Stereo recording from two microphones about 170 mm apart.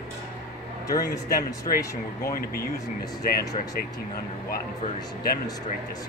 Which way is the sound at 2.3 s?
60° left (ahead or behind).